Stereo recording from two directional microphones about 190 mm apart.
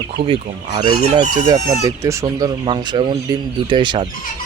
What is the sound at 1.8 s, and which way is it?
Speech, 15° right (ahead or behind).